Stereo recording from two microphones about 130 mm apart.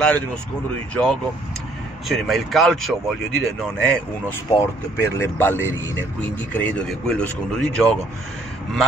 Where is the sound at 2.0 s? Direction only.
Centre (ahead or behind).